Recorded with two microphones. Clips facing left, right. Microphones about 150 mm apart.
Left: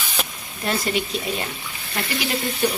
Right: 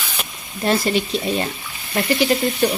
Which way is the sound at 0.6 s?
30° right (ahead or behind).